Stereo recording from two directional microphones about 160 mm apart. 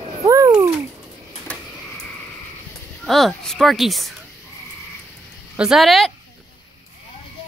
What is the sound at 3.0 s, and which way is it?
Speech, centre (ahead or behind).